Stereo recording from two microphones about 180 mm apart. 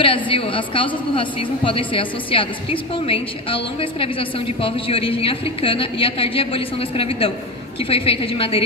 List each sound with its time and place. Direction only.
0.0 s a woman's voice: 30° left (ahead or behind)